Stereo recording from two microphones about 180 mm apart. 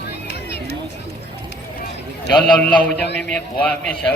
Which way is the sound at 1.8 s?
60° left (ahead or behind).